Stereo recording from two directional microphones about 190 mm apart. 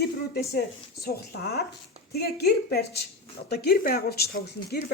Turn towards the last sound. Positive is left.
turn(degrees=55)  # may be behind; listen again after turning